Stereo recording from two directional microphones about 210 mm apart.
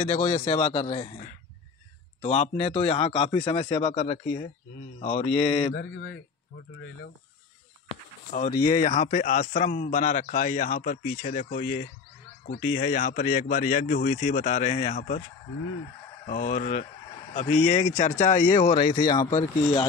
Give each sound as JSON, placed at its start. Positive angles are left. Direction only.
{"t": 0.0, "sound": "a man's voice", "side_deg": 35}
{"t": 2.2, "sound": "speech", "side_deg": 30}
{"t": 8.3, "sound": "a man's voice", "side_deg": 45}
{"t": 16.3, "sound": "a man's voice", "side_deg": 35}